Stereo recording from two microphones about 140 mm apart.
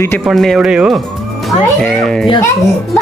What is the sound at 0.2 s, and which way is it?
Speech, centre (ahead or behind).